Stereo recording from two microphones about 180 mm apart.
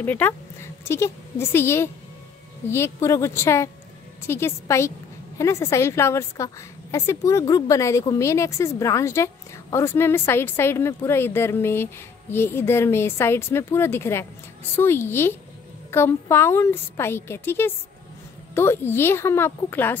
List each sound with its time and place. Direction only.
0.0 s a woman's voice: 10° left (ahead or behind)